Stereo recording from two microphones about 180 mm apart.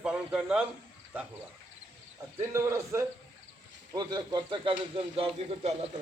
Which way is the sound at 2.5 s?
15° right (ahead or behind).